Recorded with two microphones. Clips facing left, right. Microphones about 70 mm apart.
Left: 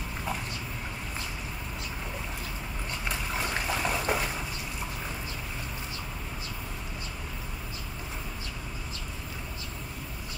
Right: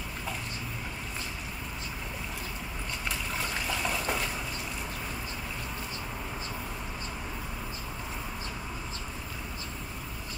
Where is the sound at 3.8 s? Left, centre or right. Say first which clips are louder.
Left 3 dB; centre.